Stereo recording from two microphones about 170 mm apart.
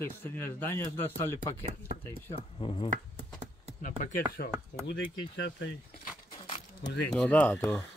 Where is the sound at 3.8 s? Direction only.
50° left (ahead or behind).